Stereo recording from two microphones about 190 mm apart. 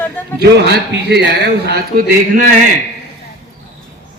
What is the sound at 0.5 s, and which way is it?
A man's voice, 60° right (ahead or behind).